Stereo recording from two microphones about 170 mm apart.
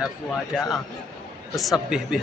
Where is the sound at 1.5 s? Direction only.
Centre (ahead or behind).